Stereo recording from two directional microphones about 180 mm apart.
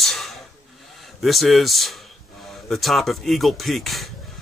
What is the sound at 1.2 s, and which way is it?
Speech, centre (ahead or behind).